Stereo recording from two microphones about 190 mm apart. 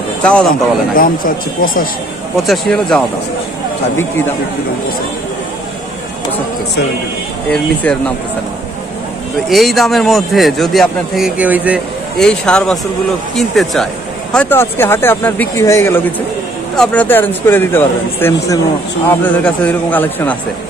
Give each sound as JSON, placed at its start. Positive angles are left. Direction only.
{"t": 0.2, "sound": "a man's voice", "side_deg": 5}
{"t": 0.9, "sound": "speech", "side_deg": 50}
{"t": 2.4, "sound": "a man's voice", "side_deg": 0}
{"t": 7.5, "sound": "a man's voice", "side_deg": 5}
{"t": 9.5, "sound": "a man's voice", "side_deg": 0}
{"t": 12.2, "sound": "a man's voice", "side_deg": 5}